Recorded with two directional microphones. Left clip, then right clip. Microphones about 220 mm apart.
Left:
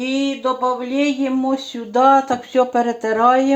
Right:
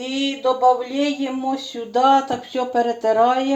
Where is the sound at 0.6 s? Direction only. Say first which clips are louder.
Right 4 dB; 25° left (ahead or behind).